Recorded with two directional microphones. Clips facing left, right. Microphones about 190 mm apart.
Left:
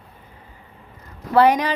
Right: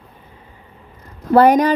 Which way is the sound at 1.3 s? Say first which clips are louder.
Right 4 dB; 45° right (ahead or behind).